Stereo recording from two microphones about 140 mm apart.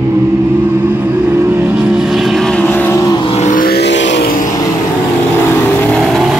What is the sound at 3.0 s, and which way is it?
Vehicle, 25° left (ahead or behind).